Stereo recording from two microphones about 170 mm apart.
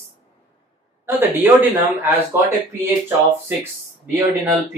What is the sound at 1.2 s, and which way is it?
Speech, 10° right (ahead or behind).